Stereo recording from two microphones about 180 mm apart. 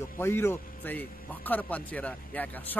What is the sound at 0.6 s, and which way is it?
Music, 55° left (ahead or behind).